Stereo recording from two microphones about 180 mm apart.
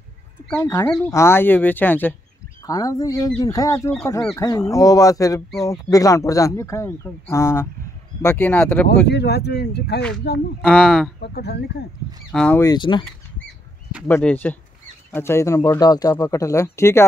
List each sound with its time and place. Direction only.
0.5 s speech: 15° left (ahead or behind)
9.0 s speech: 65° left (ahead or behind)
10.6 s speech: 5° left (ahead or behind)
11.1 s speech: 65° left (ahead or behind)
12.3 s speech: 5° left (ahead or behind)
12.5 s speech: 20° left (ahead or behind)
14.0 s speech: 10° left (ahead or behind)